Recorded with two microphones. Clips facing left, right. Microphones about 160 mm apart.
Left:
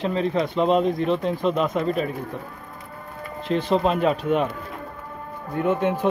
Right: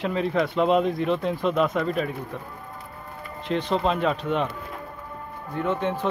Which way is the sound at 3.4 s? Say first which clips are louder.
Left 3 dB; 5° left (ahead or behind).